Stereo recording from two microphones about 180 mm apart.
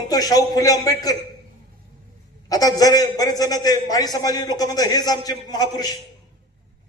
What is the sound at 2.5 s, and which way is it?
A man's voice, 20° left (ahead or behind).